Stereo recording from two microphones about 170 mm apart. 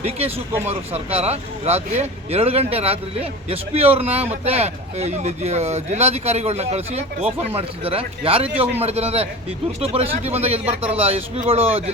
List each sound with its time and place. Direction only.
0.0 s speech: 35° right (ahead or behind)